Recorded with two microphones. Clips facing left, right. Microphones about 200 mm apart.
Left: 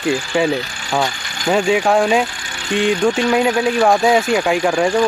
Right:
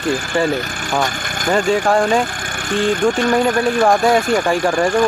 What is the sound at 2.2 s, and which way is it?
Speech, 50° right (ahead or behind).